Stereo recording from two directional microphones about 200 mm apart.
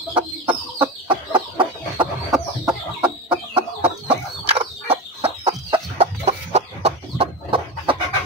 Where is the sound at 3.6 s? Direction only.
30° right (ahead or behind).